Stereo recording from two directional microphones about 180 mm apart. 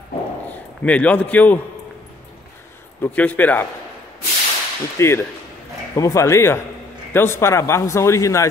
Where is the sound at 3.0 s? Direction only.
10° left (ahead or behind).